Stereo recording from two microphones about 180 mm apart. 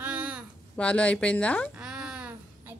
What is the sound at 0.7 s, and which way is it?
Speech, 5° left (ahead or behind).